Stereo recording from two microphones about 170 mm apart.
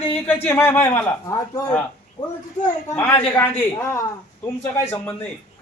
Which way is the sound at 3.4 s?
15° left (ahead or behind).